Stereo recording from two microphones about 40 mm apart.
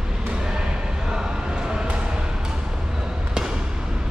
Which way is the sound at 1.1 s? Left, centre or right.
Centre.